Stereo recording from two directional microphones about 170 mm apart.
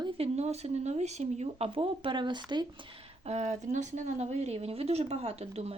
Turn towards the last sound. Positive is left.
turn(degrees=-40)  # may be behind; listen again after turning